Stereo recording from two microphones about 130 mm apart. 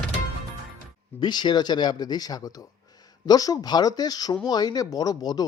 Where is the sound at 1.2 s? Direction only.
35° left (ahead or behind).